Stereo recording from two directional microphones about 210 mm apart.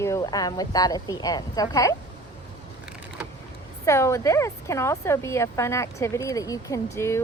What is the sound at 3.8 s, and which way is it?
A woman's voice, 15° left (ahead or behind).